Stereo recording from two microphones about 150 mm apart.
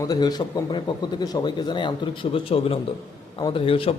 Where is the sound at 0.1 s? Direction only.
25° left (ahead or behind).